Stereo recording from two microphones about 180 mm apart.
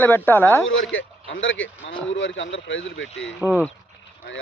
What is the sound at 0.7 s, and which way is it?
Speech, 90° left.